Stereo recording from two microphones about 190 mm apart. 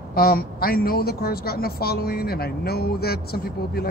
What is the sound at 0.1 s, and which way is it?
A woman's voice, 50° left (ahead or behind).